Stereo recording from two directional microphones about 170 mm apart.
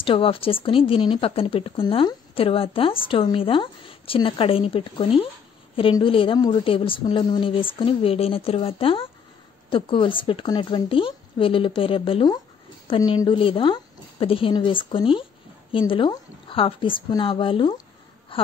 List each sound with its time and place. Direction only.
0.0 s a woman's voice: 30° left (ahead or behind)